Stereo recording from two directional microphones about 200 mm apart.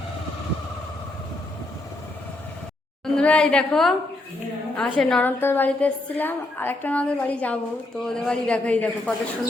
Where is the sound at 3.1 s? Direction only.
5° left (ahead or behind).